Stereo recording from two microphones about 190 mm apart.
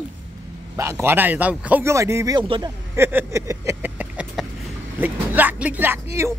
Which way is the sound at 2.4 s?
25° right (ahead or behind).